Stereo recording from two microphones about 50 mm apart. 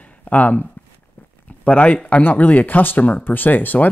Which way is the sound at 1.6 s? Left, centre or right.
Left.